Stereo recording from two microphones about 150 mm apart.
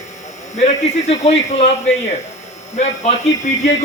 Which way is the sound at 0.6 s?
50° left (ahead or behind).